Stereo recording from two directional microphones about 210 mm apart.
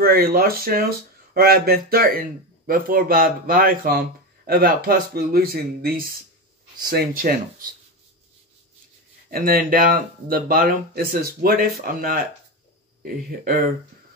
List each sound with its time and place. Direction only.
0.0 s speech: 45° right (ahead or behind)
9.3 s speech: 45° right (ahead or behind)